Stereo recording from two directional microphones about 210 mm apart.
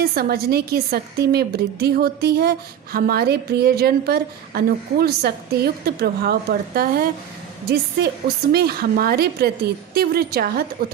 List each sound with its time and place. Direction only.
0.0 s a woman's voice: 45° right (ahead or behind)